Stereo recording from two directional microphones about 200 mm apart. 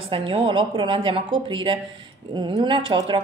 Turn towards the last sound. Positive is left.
turn(degrees=-25)  # may be behind; listen again after turning